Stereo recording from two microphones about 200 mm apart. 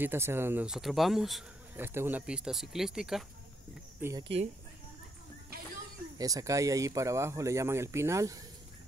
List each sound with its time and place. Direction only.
0.0 s speech: 10° right (ahead or behind)
4.0 s speech: 15° right (ahead or behind)
6.1 s speech: 15° right (ahead or behind)